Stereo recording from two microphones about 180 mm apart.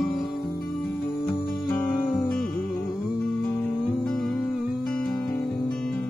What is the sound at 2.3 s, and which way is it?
Music, 5° left (ahead or behind).